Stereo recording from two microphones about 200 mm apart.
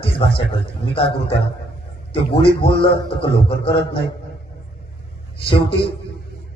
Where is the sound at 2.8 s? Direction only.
25° left (ahead or behind).